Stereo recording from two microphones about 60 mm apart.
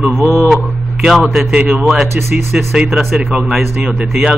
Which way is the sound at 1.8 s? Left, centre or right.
Centre.